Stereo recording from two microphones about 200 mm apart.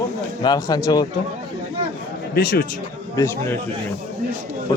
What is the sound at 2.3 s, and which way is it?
Speech, 50° left (ahead or behind).